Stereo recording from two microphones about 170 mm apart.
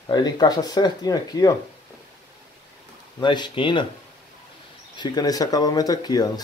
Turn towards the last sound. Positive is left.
turn(degrees=25)  # may be behind; listen again after turning